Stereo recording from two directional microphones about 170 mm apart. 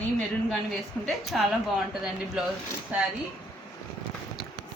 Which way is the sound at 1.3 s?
Centre (ahead or behind).